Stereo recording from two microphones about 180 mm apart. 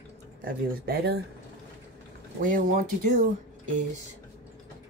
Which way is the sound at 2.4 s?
50° right (ahead or behind).